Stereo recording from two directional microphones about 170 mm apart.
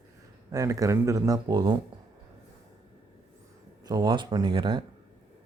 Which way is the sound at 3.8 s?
25° right (ahead or behind).